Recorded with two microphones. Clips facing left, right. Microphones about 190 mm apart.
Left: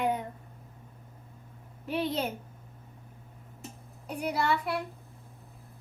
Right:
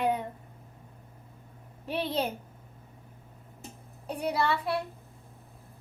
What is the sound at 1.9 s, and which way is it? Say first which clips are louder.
Speech: even; 30° right (ahead or behind).